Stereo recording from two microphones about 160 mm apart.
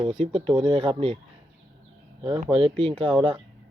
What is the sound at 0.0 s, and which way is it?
Speech, 35° right (ahead or behind).